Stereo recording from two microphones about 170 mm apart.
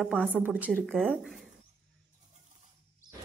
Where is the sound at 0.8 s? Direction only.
5° left (ahead or behind).